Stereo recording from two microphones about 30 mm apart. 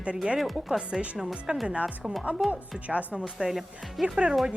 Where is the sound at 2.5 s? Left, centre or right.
Right.